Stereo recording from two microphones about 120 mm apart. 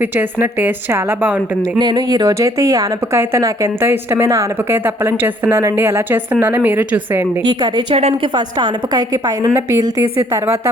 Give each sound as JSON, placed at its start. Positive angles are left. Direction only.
{"t": 0.0, "sound": "a woman's voice", "side_deg": -15}
{"t": 1.8, "sound": "speech", "side_deg": -35}
{"t": 7.4, "sound": "a woman's voice", "side_deg": -35}
{"t": 7.9, "sound": "a woman's voice", "side_deg": -55}
{"t": 8.4, "sound": "a woman's voice", "side_deg": -40}